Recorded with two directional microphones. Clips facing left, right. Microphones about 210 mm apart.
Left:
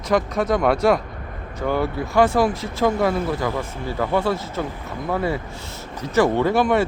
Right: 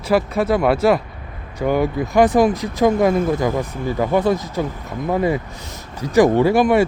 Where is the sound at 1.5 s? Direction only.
15° right (ahead or behind).